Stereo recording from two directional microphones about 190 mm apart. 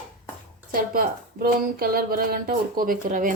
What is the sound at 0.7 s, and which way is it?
A woman's voice, 50° right (ahead or behind).